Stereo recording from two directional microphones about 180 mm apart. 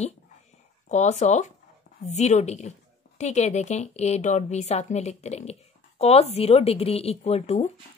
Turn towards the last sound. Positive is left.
turn(degrees=35)  # may be behind; listen again after turning